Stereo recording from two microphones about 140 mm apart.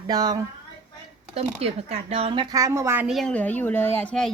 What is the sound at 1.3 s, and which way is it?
Speech, 45° right (ahead or behind).